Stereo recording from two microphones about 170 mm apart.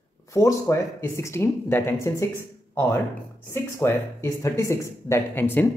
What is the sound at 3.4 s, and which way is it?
Speech, 15° left (ahead or behind).